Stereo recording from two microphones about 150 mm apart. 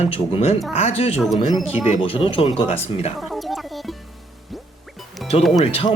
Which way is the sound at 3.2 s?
Centre (ahead or behind).